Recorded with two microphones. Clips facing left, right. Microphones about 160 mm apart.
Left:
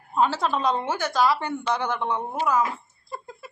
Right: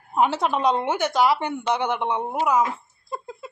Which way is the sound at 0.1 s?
20° right (ahead or behind).